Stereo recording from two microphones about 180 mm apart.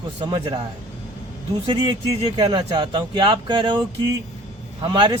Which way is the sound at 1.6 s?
30° right (ahead or behind).